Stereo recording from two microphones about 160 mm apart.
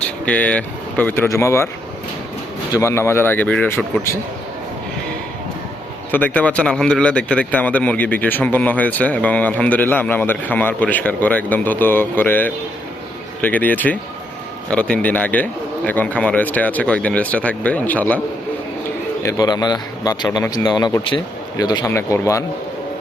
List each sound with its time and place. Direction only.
0.0 s speech: 10° left (ahead or behind)
2.7 s speech: 15° left (ahead or behind)
6.1 s speech: 10° left (ahead or behind)
19.2 s a man's voice: 20° left (ahead or behind)